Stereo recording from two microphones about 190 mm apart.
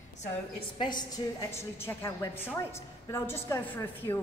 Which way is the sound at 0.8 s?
20° left (ahead or behind).